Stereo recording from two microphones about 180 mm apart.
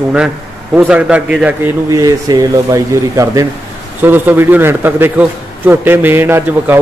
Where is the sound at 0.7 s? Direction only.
5° right (ahead or behind).